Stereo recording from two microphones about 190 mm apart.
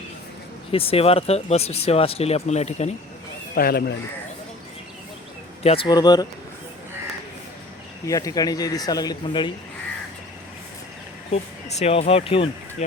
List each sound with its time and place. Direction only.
0.7 s speech: 30° left (ahead or behind)
3.5 s speech: 50° left (ahead or behind)
5.6 s speech: 30° left (ahead or behind)
8.0 s speech: 15° left (ahead or behind)
11.3 s speech: 35° left (ahead or behind)